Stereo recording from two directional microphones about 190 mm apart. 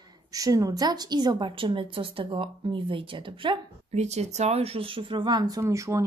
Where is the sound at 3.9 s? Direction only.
35° right (ahead or behind).